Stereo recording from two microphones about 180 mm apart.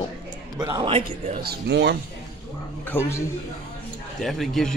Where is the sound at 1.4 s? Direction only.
65° right (ahead or behind).